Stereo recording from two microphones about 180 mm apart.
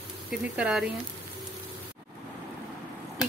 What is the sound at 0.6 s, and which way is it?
Speech, 5° right (ahead or behind).